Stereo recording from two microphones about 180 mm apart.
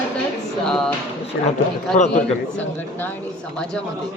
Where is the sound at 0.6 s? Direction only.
5° left (ahead or behind).